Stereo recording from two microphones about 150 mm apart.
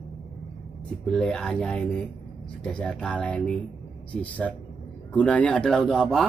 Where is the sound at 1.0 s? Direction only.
5° left (ahead or behind).